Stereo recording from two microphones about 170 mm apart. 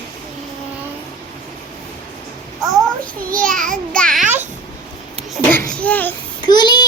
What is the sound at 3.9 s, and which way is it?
Speech, 5° left (ahead or behind).